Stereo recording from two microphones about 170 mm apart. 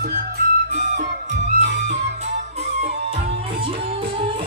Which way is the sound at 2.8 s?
35° right (ahead or behind).